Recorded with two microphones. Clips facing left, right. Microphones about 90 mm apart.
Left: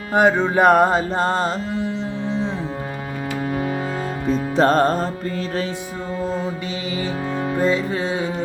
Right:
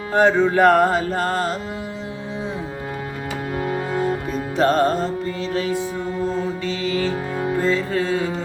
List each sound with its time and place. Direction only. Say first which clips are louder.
0.1 s music: even; 15° left (ahead or behind)
4.3 s music: left 5 dB; 35° left (ahead or behind)
7.6 s music: left 1 dB; 15° left (ahead or behind)